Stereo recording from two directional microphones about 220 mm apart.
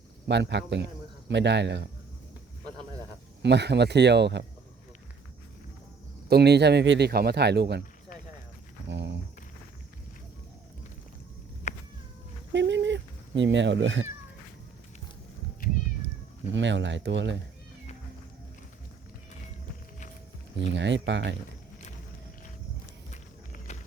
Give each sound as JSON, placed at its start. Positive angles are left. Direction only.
{"t": 0.3, "sound": "speech", "side_deg": -50}
{"t": 3.4, "sound": "speech", "side_deg": -50}
{"t": 6.2, "sound": "speech", "side_deg": -45}
{"t": 8.9, "sound": "a sound", "side_deg": -50}
{"t": 11.7, "sound": "cat", "side_deg": 30}
{"t": 12.5, "sound": "speech", "side_deg": -55}
{"t": 16.5, "sound": "speech", "side_deg": -55}
{"t": 20.7, "sound": "speech", "side_deg": -55}
{"t": 23.1, "sound": "run", "side_deg": 35}